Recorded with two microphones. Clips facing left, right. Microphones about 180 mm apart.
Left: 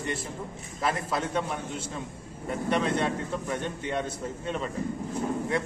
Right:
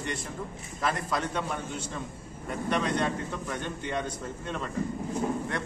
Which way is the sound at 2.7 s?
5° left (ahead or behind).